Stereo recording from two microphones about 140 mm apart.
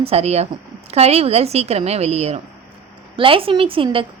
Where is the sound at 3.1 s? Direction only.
40° right (ahead or behind).